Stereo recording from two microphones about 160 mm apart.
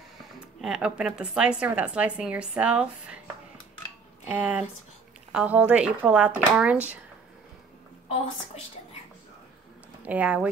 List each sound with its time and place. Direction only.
0.6 s a woman's voice: 5° right (ahead or behind)
4.2 s a woman's voice: 10° right (ahead or behind)
10.0 s a woman's voice: 10° right (ahead or behind)